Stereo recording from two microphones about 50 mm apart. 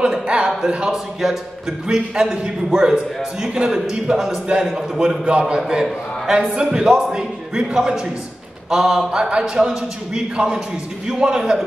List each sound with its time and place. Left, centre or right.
0.0 s a man's voice: centre
0.9 s a man's voice: centre